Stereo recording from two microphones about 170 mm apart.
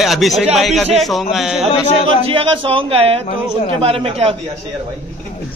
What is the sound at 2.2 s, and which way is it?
A man's voice, 30° right (ahead or behind).